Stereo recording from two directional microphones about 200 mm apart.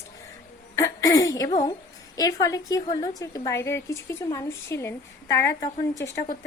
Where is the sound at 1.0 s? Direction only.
15° left (ahead or behind).